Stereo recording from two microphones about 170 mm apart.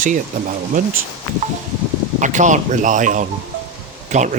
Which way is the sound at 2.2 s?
45° right (ahead or behind).